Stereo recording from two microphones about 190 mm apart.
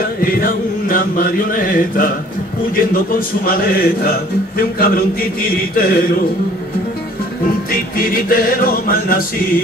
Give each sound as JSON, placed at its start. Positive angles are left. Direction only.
{"t": 0.0, "sound": "speech", "side_deg": 50}
{"t": 7.7, "sound": "speech", "side_deg": 50}